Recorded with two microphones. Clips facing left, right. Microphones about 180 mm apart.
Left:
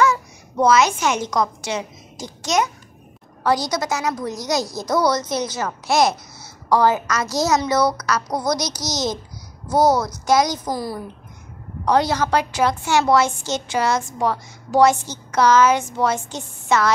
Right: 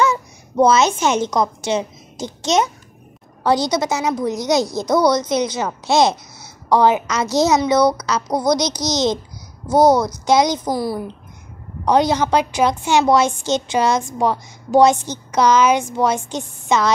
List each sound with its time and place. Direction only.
0.0 s a woman's voice: 25° right (ahead or behind)